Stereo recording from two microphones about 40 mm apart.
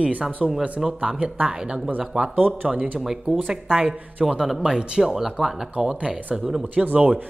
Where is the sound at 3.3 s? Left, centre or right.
Right.